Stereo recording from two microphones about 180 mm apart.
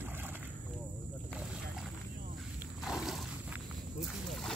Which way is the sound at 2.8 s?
Centre (ahead or behind).